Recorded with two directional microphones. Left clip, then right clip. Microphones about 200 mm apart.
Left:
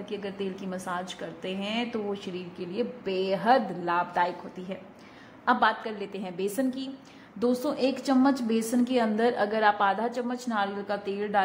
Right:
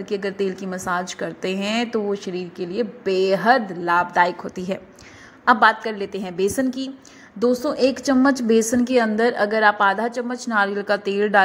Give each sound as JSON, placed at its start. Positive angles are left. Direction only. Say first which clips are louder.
{"t": 0.1, "sound": "a woman's voice", "louder": "right 11 dB", "side_deg": -20}